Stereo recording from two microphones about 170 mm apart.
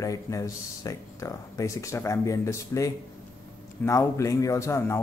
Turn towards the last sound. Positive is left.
turn(degrees=15)  # may be behind; listen again after turning